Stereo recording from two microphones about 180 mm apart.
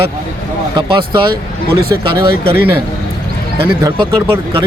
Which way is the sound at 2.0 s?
30° right (ahead or behind).